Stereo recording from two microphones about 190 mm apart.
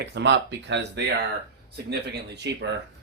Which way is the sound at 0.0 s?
65° right (ahead or behind).